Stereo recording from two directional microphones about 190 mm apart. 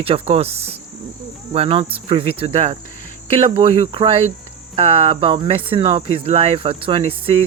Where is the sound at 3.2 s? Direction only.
30° right (ahead or behind).